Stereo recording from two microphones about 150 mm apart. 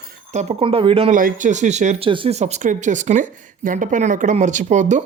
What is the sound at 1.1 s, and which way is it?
Speech, 60° right (ahead or behind).